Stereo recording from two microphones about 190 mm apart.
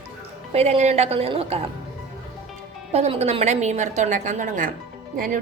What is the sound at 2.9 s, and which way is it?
A woman's voice, 35° right (ahead or behind).